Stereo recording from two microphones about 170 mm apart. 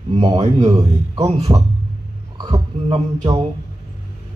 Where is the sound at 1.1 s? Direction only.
30° right (ahead or behind).